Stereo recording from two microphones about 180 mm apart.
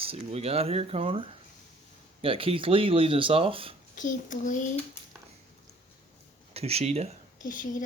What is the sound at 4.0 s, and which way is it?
Speech, 45° left (ahead or behind).